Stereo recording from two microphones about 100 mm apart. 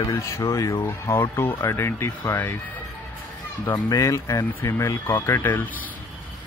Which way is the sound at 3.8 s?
40° left (ahead or behind).